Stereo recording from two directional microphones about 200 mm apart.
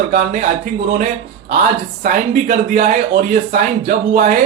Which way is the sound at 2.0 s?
45° right (ahead or behind).